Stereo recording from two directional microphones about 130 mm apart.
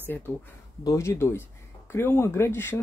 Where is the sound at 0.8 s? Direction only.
20° left (ahead or behind).